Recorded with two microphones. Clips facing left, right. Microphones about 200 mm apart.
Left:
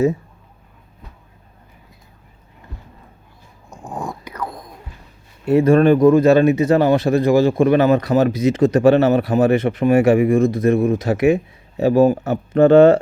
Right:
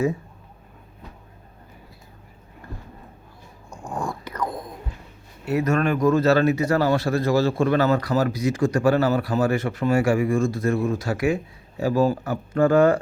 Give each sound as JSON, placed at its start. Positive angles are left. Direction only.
{"t": 3.7, "sound": "whispering", "side_deg": 20}
{"t": 4.4, "sound": "whispering", "side_deg": -5}
{"t": 5.5, "sound": "a man's voice", "side_deg": 30}
{"t": 6.1, "sound": "a man's voice", "side_deg": 15}